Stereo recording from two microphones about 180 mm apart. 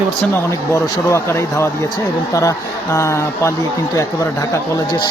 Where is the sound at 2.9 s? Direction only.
15° left (ahead or behind).